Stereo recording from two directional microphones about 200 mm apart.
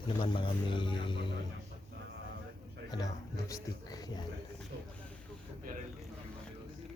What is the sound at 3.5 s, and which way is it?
Speech, 20° left (ahead or behind).